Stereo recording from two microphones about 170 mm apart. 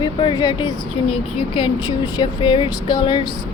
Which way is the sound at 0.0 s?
25° left (ahead or behind).